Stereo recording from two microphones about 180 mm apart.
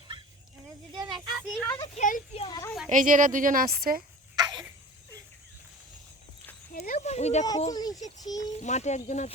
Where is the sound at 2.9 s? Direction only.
45° right (ahead or behind).